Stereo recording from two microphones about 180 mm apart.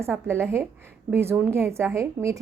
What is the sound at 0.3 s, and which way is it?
A woman's voice, 15° right (ahead or behind).